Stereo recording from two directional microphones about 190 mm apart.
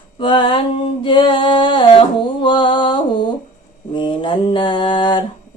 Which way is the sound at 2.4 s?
25° left (ahead or behind).